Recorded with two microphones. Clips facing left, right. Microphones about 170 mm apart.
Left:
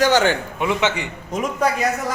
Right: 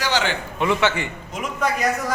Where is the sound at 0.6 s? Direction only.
15° left (ahead or behind).